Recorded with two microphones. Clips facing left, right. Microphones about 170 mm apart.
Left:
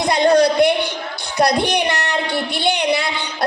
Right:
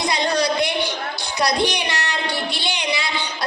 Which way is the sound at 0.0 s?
55° left (ahead or behind).